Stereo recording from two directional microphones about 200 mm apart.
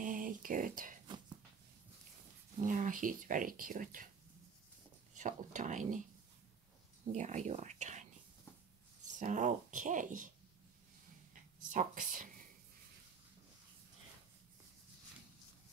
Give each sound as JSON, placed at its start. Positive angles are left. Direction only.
{"t": 0.0, "sound": "a sound", "side_deg": -40}
{"t": 2.6, "sound": "speech", "side_deg": -40}
{"t": 5.1, "sound": "speech", "side_deg": -40}
{"t": 7.1, "sound": "speech", "side_deg": -35}
{"t": 9.2, "sound": "speech", "side_deg": -40}
{"t": 11.7, "sound": "speech", "side_deg": -45}